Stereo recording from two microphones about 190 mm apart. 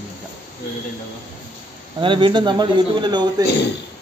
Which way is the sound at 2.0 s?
25° right (ahead or behind).